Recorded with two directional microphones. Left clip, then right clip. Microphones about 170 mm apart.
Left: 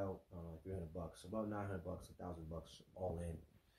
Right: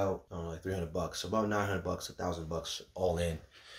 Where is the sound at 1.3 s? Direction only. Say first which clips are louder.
Right 13 dB; 20° right (ahead or behind).